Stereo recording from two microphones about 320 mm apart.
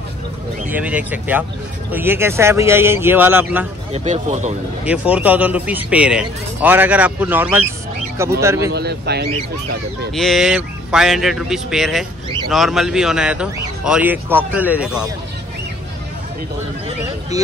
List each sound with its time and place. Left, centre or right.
0.7 s a man's voice: centre
3.9 s speech: right
4.8 s a man's voice: centre
8.7 s speech: right
10.1 s a man's voice: centre